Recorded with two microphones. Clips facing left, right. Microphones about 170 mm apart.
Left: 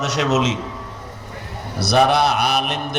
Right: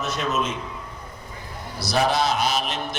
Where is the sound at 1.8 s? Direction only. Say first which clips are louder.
Left 6 dB; 65° left (ahead or behind).